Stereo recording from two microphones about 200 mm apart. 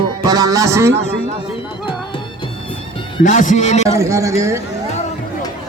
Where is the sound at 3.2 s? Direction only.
40° left (ahead or behind).